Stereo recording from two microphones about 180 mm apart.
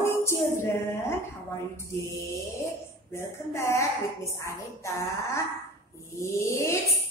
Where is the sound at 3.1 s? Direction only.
15° left (ahead or behind).